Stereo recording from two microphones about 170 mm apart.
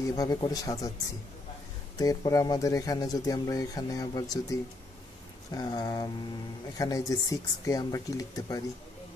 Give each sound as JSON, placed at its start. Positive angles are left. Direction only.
{"t": 0.1, "sound": "speech", "side_deg": 25}
{"t": 2.0, "sound": "speech", "side_deg": 20}